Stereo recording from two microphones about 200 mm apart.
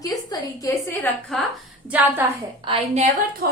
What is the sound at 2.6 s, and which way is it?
Speech, 35° right (ahead or behind).